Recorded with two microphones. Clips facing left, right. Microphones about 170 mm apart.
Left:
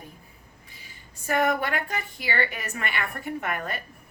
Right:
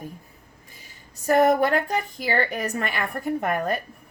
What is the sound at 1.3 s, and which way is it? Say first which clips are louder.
A woman's voice: right 6 dB; 40° right (ahead or behind).